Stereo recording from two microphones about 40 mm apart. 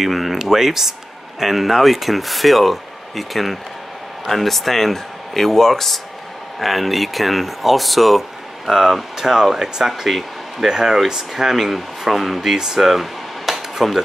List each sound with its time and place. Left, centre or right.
0.0 s speech: centre
10.7 s speech: centre
12.9 s a sound: centre
13.8 s speech: centre